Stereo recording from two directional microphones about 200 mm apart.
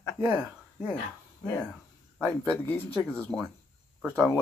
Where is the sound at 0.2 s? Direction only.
10° right (ahead or behind).